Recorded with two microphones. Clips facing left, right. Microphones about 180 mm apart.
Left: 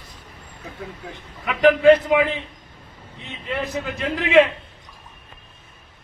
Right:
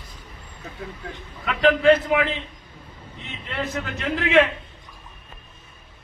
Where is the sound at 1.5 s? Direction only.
10° left (ahead or behind).